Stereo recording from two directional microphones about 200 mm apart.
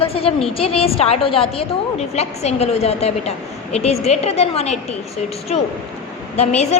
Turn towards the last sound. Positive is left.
turn(degrees=35)  # may be behind; listen again after turning